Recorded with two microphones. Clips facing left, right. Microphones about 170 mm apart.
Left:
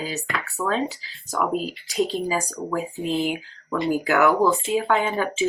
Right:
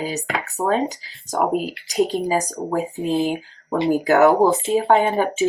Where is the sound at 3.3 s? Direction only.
35° right (ahead or behind).